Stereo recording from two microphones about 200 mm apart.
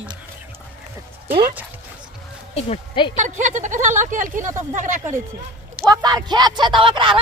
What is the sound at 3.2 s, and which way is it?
Speech, 35° right (ahead or behind).